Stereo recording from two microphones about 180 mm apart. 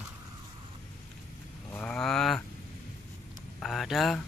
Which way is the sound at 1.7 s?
5° left (ahead or behind).